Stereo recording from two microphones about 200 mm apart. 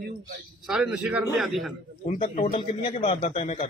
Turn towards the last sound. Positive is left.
turn(degrees=30)  # may be behind; listen again after turning